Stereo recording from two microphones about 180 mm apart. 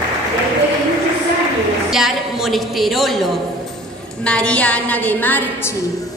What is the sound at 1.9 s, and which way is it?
A woman's voice, centre (ahead or behind).